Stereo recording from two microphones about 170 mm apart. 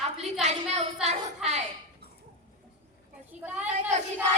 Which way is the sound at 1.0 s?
40° right (ahead or behind).